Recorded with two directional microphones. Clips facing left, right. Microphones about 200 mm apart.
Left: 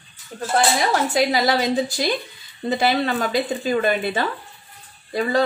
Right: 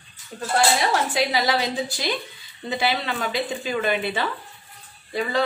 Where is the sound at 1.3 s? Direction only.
45° left (ahead or behind).